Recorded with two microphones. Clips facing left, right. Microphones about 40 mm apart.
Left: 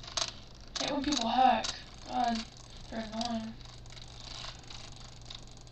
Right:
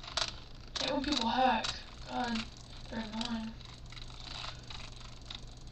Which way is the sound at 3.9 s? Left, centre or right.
Right.